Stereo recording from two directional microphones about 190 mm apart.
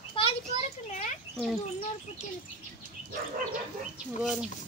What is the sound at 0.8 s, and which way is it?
Speech, 40° left (ahead or behind).